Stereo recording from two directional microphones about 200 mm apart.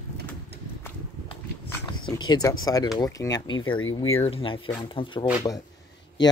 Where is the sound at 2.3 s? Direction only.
20° left (ahead or behind).